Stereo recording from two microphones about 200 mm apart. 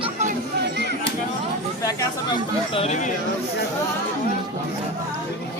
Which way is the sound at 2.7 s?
35° left (ahead or behind).